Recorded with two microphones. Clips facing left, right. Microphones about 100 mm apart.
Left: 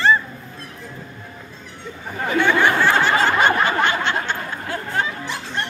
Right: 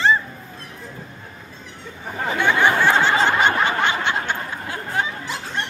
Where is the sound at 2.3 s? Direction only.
15° right (ahead or behind).